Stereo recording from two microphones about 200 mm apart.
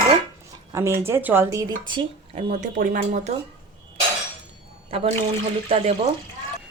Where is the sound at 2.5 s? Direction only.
45° right (ahead or behind).